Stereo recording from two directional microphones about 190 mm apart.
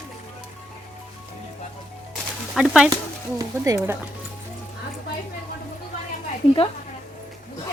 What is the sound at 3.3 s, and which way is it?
Speech, 20° right (ahead or behind).